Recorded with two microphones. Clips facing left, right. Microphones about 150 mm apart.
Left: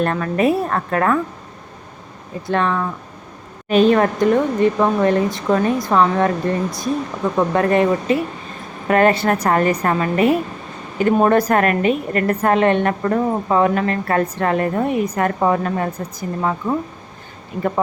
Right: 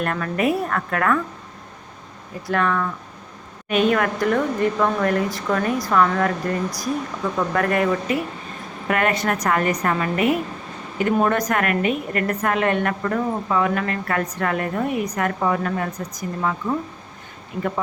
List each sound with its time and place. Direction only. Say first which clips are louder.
0.0 s speech: left 4 dB; 30° left (ahead or behind)
2.5 s a woman's voice: left 2 dB; 25° left (ahead or behind)